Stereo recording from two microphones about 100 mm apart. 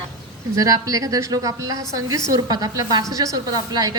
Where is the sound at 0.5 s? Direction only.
35° right (ahead or behind).